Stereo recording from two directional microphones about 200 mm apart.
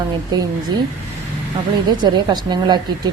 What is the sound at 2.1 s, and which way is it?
Speech, 20° right (ahead or behind).